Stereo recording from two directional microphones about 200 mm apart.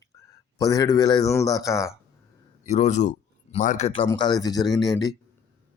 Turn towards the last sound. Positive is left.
turn(degrees=20)  # may be behind; listen again after turning